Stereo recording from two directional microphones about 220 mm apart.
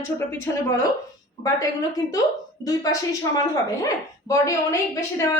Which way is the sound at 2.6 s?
15° left (ahead or behind).